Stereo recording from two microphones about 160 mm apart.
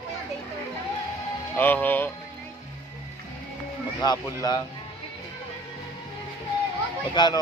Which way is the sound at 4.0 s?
25° left (ahead or behind).